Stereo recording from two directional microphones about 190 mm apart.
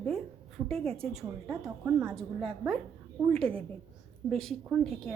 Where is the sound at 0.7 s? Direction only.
30° right (ahead or behind).